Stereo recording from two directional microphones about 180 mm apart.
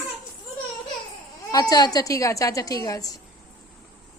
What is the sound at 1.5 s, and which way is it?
A woman's voice, 20° left (ahead or behind).